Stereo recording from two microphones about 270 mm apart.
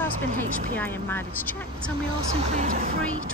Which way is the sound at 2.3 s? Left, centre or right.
Right.